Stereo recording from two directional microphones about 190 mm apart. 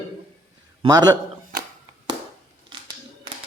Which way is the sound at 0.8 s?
20° right (ahead or behind).